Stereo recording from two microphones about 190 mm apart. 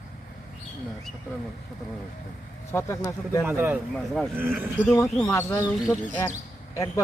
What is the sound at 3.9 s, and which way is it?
Speech, 5° left (ahead or behind).